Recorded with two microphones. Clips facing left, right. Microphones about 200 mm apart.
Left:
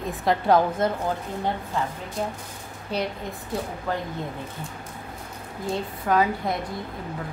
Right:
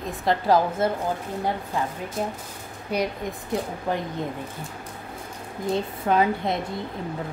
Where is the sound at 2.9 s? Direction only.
10° right (ahead or behind).